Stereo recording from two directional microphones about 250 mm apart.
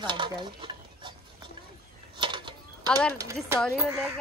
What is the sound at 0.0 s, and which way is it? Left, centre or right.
Stir, centre.